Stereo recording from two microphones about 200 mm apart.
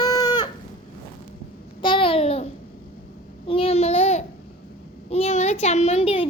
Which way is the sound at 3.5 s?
30° left (ahead or behind).